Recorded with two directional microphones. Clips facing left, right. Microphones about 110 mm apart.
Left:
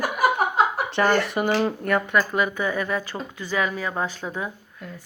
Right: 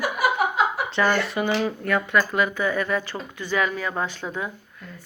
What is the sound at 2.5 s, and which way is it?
Speech, 15° left (ahead or behind).